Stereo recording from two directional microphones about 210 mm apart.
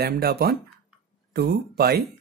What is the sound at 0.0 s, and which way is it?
Speech, 50° right (ahead or behind).